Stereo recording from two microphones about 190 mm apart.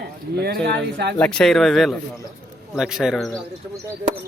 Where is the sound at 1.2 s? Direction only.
5° left (ahead or behind).